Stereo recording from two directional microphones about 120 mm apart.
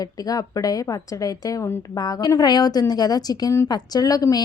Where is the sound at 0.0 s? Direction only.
30° left (ahead or behind).